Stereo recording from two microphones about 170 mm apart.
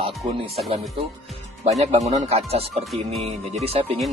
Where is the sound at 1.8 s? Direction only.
40° right (ahead or behind).